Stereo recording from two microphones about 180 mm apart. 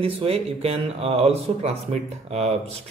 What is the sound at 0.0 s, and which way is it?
Speech, 35° right (ahead or behind).